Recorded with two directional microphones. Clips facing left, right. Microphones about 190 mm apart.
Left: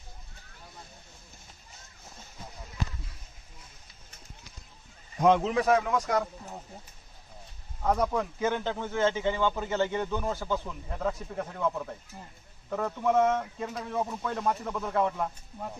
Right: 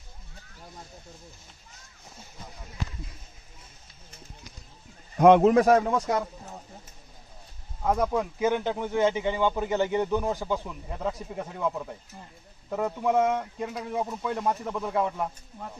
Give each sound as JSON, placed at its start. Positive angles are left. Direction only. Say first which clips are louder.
{"t": 5.1, "sound": "speech", "louder": "right 7 dB", "side_deg": -60}
{"t": 7.8, "sound": "speech", "louder": "right 2 dB", "side_deg": -10}